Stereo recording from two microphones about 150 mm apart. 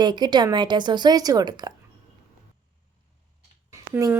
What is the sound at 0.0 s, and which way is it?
A woman's voice, 30° right (ahead or behind).